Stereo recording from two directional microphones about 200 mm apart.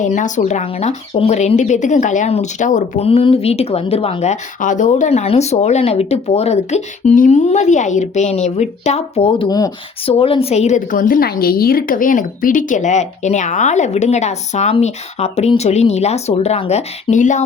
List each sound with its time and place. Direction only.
0.0 s a woman's voice: 40° left (ahead or behind)